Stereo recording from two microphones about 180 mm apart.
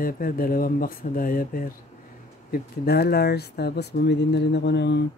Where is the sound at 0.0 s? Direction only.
55° left (ahead or behind); by 5.0 s 75° left (ahead or behind).